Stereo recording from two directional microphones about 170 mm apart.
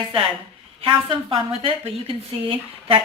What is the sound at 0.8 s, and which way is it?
Speech, 30° right (ahead or behind).